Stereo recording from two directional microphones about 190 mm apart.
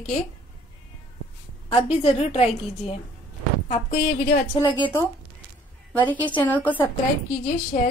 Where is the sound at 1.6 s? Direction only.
30° left (ahead or behind).